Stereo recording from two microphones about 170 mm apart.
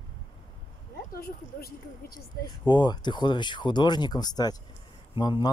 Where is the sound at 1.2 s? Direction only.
60° left (ahead or behind).